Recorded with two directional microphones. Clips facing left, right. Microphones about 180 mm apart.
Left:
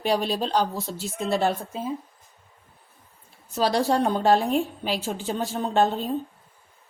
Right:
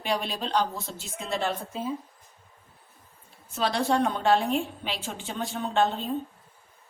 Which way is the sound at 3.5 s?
40° left (ahead or behind).